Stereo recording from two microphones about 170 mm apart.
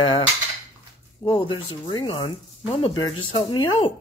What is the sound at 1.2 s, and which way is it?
Speech, 30° left (ahead or behind).